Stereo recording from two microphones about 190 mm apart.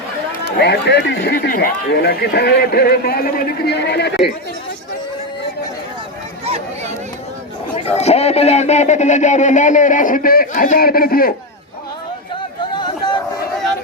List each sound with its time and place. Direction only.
0.6 s speech: 60° left (ahead or behind)
6.4 s a sound: 35° right (ahead or behind)
7.9 s speech: 35° left (ahead or behind); by 11.3 s 50° left (ahead or behind)